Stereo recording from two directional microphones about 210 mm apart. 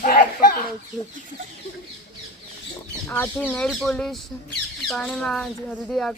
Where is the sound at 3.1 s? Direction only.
10° left (ahead or behind).